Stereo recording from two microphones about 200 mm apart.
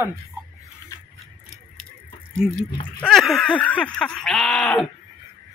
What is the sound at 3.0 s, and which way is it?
Speech, centre (ahead or behind).